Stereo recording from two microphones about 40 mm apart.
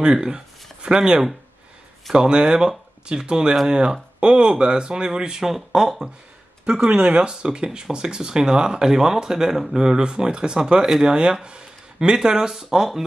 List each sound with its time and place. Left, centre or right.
0.0 s speech: centre
5.4 s speech: centre
6.9 s speech: right; by 9.8 s centre
9.8 s speech: centre